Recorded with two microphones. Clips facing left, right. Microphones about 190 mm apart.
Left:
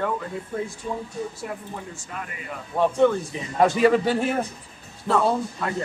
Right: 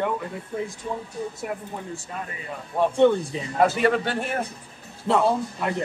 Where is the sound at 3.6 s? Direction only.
Centre (ahead or behind).